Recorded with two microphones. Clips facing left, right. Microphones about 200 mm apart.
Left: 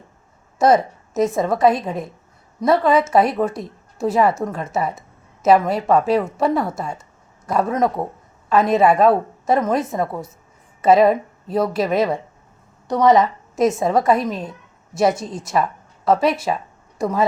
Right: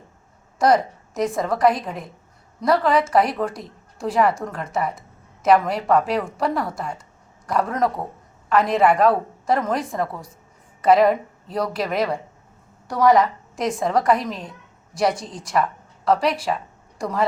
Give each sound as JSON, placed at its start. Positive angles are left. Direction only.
{"t": 0.6, "sound": "a woman's voice", "side_deg": 25}